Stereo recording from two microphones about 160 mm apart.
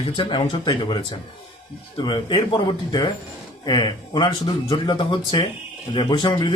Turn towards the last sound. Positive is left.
turn(degrees=25)  # may be behind; listen again after turning